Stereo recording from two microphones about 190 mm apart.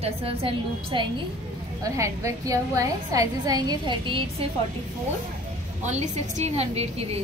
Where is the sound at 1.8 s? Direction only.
15° right (ahead or behind).